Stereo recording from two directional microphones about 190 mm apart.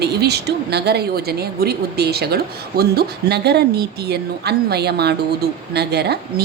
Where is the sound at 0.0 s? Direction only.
60° right (ahead or behind).